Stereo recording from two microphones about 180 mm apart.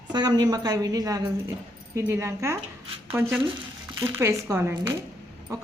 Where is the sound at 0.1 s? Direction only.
25° right (ahead or behind).